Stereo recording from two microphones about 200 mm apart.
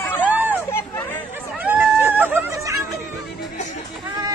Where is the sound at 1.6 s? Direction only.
10° right (ahead or behind).